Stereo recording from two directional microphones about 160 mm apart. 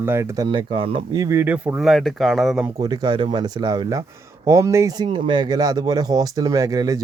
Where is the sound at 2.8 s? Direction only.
25° right (ahead or behind).